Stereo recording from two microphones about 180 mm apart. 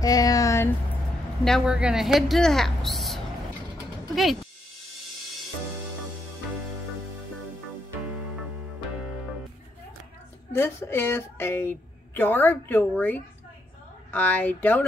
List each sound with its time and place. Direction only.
0.0 s speech: 20° left (ahead or behind)
1.4 s a woman's voice: centre (ahead or behind)
10.5 s a woman's voice: 15° left (ahead or behind)